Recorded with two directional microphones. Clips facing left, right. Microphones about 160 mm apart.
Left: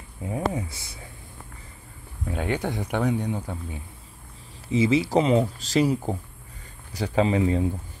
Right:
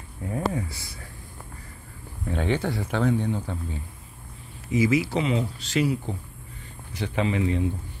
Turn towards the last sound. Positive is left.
turn(degrees=35)  # may be behind; listen again after turning